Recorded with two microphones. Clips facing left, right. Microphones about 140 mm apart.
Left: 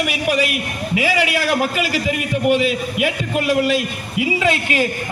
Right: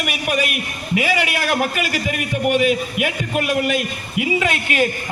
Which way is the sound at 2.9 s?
25° left (ahead or behind).